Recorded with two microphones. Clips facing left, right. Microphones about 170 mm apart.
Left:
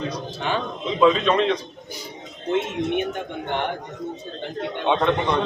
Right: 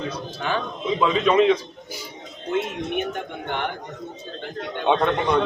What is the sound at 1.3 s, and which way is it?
Speech, 10° right (ahead or behind).